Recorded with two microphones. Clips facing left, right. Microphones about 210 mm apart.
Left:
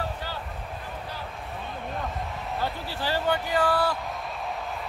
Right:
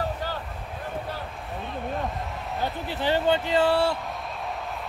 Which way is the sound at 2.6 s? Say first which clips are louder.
Right 4 dB; 20° right (ahead or behind).